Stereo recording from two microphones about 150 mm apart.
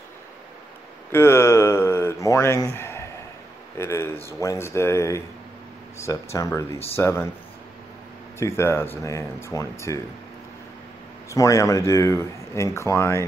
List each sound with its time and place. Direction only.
1.1 s speech: 15° left (ahead or behind)
6.3 s speech: 20° left (ahead or behind)
8.4 s speech: 15° left (ahead or behind)
11.2 s speech: 20° left (ahead or behind)